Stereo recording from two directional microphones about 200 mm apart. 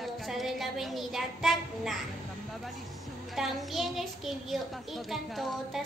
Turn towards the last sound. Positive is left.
turn(degrees=0)  # may be behind; listen again after turning